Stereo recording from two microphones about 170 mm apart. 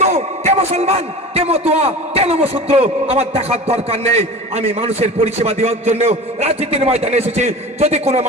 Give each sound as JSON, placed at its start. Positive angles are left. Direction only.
{"t": 0.0, "sound": "a man's voice", "side_deg": -40}